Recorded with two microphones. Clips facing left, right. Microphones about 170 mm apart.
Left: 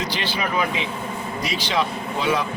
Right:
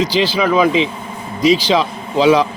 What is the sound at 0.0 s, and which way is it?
A man's voice, 90° right.